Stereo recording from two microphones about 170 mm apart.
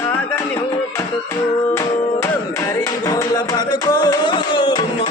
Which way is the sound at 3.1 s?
20° left (ahead or behind).